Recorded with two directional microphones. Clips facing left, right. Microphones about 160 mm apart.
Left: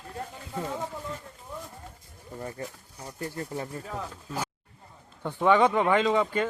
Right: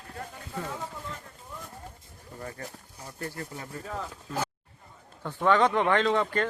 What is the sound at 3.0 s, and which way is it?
Speech, 15° left (ahead or behind).